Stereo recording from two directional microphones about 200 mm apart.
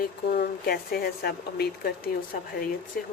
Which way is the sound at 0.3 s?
50° left (ahead or behind).